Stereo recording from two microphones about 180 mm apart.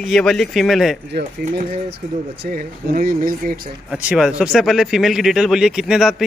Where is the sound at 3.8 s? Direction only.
5° right (ahead or behind).